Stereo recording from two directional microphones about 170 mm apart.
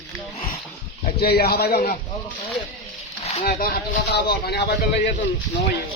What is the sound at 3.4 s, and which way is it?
Speech, 60° left (ahead or behind).